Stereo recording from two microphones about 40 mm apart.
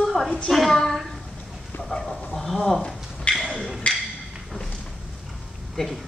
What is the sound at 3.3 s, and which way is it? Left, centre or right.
Wood block, left.